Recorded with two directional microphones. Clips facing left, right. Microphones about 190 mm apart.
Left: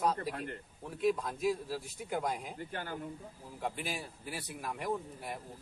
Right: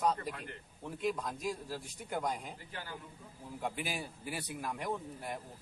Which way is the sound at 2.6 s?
50° left (ahead or behind).